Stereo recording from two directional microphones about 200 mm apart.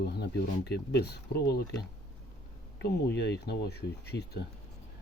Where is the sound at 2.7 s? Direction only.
55° left (ahead or behind).